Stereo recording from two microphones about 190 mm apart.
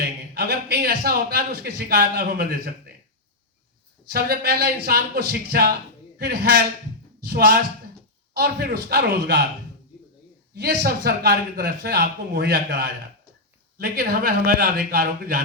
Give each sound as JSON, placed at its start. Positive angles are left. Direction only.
{"t": 0.0, "sound": "a man's voice", "side_deg": -55}
{"t": 4.1, "sound": "a man's voice", "side_deg": -55}
{"t": 10.5, "sound": "a man's voice", "side_deg": -60}